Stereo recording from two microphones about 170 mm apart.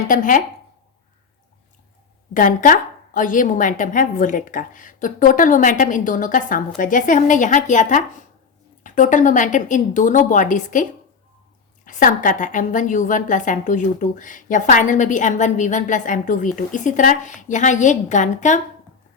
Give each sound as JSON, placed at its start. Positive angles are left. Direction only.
{"t": 0.1, "sound": "a woman's voice", "side_deg": 50}
{"t": 2.3, "sound": "a woman's voice", "side_deg": 50}
{"t": 11.9, "sound": "a woman's voice", "side_deg": 50}